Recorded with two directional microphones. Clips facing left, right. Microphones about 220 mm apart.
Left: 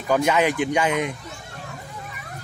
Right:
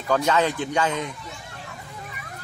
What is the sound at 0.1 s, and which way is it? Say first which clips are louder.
Speech: left 2 dB; 15° left (ahead or behind).